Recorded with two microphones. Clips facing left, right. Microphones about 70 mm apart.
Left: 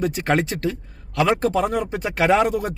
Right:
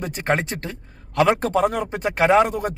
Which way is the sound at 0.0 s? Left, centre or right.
Right.